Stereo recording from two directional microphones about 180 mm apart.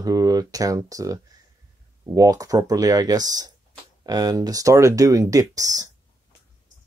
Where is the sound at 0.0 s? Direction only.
20° right (ahead or behind).